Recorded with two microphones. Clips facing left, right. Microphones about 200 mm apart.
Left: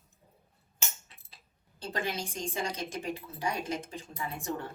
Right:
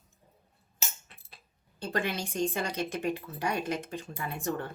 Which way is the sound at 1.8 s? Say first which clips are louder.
Right 3 dB; 60° right (ahead or behind).